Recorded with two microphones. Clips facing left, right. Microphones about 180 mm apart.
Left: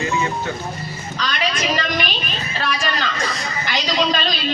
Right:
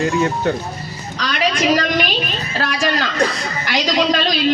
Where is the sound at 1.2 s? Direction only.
60° right (ahead or behind).